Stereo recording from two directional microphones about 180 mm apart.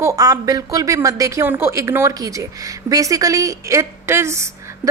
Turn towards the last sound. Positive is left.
turn(degrees=-15)  # may be behind; listen again after turning